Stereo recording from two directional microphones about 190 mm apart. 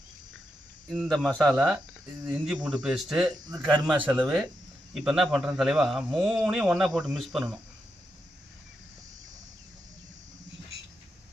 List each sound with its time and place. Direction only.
0.9 s speech: centre (ahead or behind)
3.5 s a man's voice: 25° right (ahead or behind)
3.8 s speech: 5° right (ahead or behind)